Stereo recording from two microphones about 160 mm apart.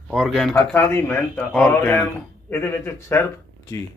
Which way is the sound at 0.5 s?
15° left (ahead or behind).